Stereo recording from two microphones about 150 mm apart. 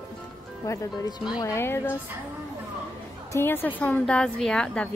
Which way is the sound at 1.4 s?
15° left (ahead or behind).